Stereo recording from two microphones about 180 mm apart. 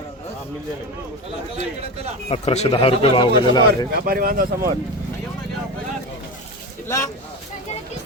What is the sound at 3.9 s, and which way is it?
Speech, 55° right (ahead or behind).